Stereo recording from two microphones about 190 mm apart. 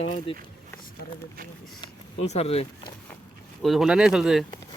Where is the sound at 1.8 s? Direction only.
35° left (ahead or behind).